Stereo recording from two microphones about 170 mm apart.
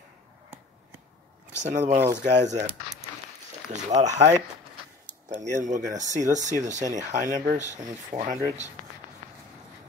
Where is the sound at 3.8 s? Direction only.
45° right (ahead or behind).